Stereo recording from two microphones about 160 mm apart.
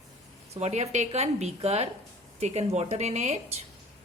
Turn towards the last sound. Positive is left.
turn(degrees=-45)  # may be behind; listen again after turning